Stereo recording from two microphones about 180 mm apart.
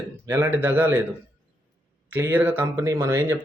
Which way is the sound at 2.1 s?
10° right (ahead or behind).